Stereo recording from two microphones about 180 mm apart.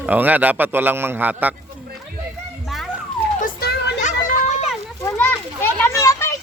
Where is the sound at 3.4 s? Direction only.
60° left (ahead or behind).